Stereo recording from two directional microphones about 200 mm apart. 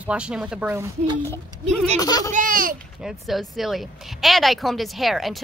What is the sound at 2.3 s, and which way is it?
Speech, 45° right (ahead or behind).